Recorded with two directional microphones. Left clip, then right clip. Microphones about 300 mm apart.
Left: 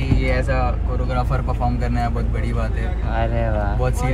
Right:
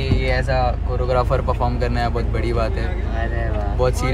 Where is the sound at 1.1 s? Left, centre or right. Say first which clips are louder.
Right 6 dB; centre.